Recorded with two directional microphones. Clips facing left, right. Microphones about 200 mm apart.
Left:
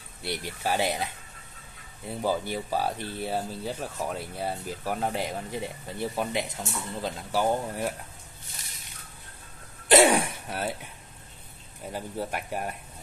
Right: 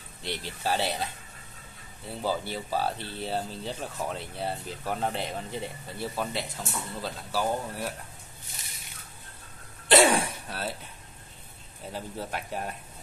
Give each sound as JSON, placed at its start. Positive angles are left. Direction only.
{"t": 0.2, "sound": "speech", "side_deg": 10}
{"t": 9.8, "sound": "throat clearing", "side_deg": 15}
{"t": 11.9, "sound": "speech", "side_deg": 10}